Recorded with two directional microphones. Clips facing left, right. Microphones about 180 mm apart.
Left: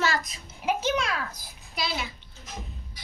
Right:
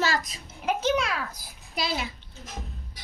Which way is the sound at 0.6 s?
5° left (ahead or behind).